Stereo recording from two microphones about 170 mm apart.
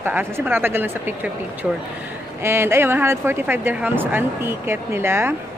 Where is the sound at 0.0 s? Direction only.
10° right (ahead or behind).